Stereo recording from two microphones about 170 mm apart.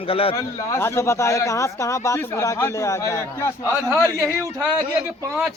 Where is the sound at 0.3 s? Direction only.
15° left (ahead or behind).